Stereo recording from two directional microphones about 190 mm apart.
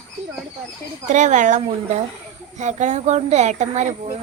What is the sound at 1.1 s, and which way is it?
A woman's voice, 40° right (ahead or behind).